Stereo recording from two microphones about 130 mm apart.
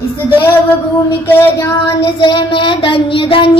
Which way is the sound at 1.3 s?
15° left (ahead or behind).